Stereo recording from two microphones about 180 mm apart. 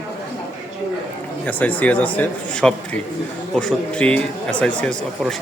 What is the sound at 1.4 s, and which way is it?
Speech, 10° left (ahead or behind).